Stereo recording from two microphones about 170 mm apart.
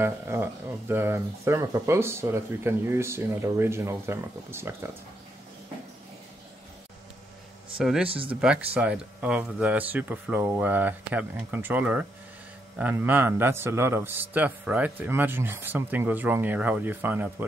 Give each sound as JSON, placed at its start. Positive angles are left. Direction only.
{"t": 0.0, "sound": "speech", "side_deg": -15}
{"t": 7.7, "sound": "speech", "side_deg": -5}
{"t": 8.1, "sound": "speech", "side_deg": -30}
{"t": 8.4, "sound": "speech", "side_deg": -5}